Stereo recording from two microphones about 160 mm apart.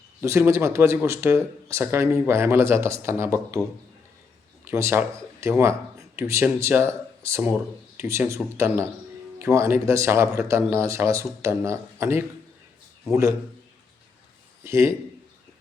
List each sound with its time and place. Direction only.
0.2 s speech: 15° right (ahead or behind)
4.7 s a man's voice: 15° right (ahead or behind)
14.6 s speech: 15° right (ahead or behind)